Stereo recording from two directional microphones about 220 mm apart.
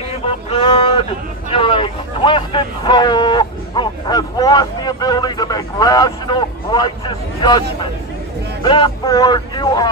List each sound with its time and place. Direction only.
0.5 s speech: 25° left (ahead or behind)